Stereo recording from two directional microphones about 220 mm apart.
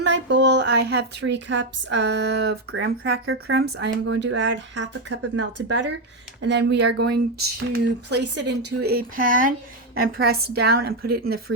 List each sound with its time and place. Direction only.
0.0 s a woman's voice: 50° right (ahead or behind)